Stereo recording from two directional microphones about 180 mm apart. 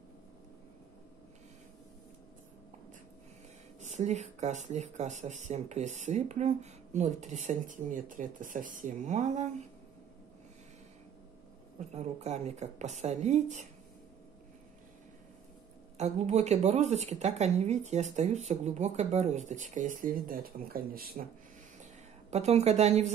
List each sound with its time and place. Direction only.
3.8 s speech: 40° right (ahead or behind)
11.8 s speech: 40° right (ahead or behind)
16.0 s speech: 40° right (ahead or behind); by 21.3 s 55° right (ahead or behind)
22.3 s speech: 35° right (ahead or behind)